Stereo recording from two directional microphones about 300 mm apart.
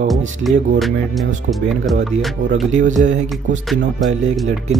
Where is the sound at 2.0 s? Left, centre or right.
Right.